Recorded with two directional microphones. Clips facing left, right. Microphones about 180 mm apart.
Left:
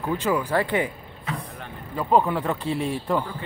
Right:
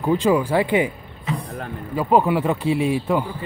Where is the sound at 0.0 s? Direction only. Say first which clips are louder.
Right 6 dB; 20° right (ahead or behind).